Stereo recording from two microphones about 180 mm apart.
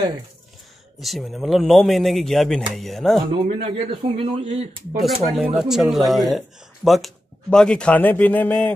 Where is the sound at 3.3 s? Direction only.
30° right (ahead or behind).